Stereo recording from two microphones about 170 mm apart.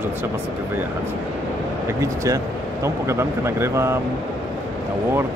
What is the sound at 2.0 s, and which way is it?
Speech, 20° right (ahead or behind).